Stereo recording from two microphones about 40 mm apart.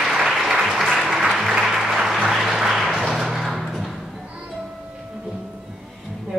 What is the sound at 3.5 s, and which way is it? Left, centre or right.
Door, centre.